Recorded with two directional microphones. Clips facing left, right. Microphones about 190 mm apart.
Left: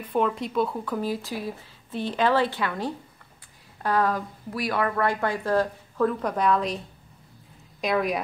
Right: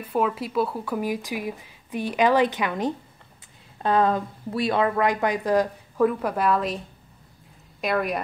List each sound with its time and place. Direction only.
0.0 s a woman's voice: 5° right (ahead or behind)
7.8 s a woman's voice: centre (ahead or behind)